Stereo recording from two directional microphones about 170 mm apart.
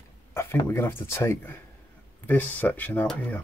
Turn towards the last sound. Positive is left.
turn(degrees=10)  # may be behind; listen again after turning